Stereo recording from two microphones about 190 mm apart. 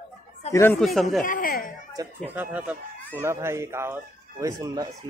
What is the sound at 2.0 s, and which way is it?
Speech, 10° right (ahead or behind).